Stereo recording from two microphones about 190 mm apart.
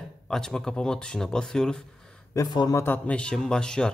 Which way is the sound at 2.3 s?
20° left (ahead or behind).